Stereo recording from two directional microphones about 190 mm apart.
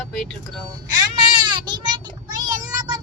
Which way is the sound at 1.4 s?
25° right (ahead or behind).